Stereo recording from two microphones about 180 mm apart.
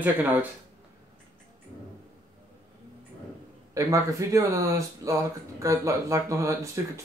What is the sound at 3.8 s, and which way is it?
Speech, 20° right (ahead or behind).